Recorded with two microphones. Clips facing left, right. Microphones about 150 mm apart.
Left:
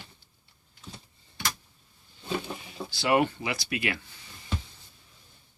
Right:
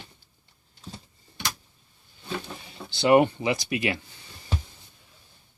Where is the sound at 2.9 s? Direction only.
20° right (ahead or behind).